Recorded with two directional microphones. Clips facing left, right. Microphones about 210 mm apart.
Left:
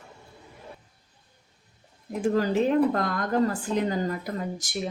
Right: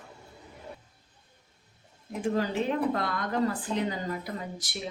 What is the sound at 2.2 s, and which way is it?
A woman's voice, 45° left (ahead or behind).